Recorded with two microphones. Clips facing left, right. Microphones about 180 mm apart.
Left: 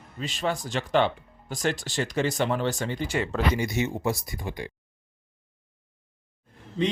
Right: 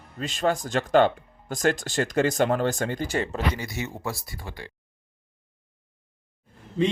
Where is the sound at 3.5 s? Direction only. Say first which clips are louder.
Left 6 dB; 20° left (ahead or behind).